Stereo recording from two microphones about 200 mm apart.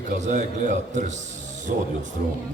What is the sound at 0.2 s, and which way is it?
Speech, 35° right (ahead or behind).